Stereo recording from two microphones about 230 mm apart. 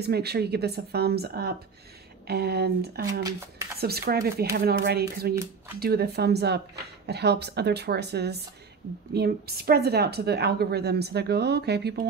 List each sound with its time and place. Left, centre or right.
0.0 s a woman's voice: right